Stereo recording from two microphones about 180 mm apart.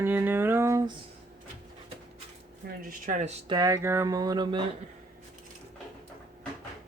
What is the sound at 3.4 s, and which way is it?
Speech, 20° right (ahead or behind).